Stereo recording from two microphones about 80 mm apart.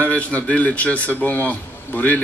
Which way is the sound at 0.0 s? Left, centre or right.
Centre.